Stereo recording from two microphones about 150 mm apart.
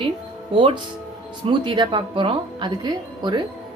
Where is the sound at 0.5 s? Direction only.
35° right (ahead or behind).